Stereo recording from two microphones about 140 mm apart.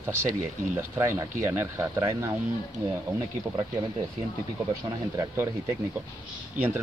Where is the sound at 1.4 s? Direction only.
15° right (ahead or behind).